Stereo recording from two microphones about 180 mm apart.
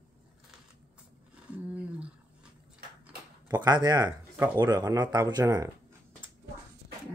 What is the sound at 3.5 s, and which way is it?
Speech, 25° right (ahead or behind).